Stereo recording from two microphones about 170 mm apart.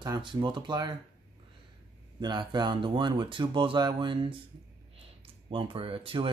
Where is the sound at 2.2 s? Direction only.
25° right (ahead or behind).